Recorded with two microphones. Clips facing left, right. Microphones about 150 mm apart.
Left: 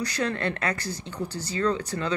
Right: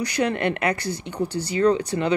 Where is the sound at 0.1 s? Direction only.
15° right (ahead or behind).